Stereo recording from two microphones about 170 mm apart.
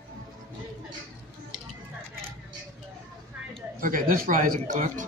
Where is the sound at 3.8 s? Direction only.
55° right (ahead or behind).